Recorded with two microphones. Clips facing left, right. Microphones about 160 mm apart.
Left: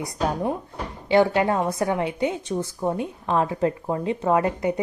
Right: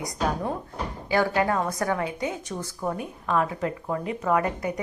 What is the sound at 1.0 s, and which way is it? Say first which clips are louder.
A woman's voice: left 5 dB; 25° left (ahead or behind).